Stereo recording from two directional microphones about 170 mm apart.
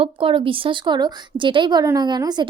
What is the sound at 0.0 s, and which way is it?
A woman's voice, 30° right (ahead or behind).